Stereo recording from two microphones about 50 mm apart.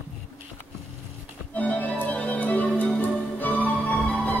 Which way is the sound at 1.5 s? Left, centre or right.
Left.